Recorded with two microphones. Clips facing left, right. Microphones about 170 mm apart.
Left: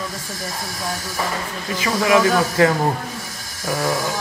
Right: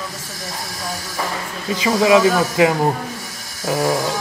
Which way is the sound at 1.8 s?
20° right (ahead or behind).